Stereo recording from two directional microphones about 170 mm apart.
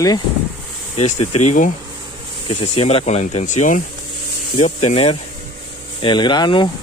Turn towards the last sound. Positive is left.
turn(degrees=25)  # may be behind; listen again after turning